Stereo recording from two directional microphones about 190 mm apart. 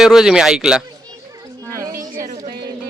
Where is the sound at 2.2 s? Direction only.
40° right (ahead or behind).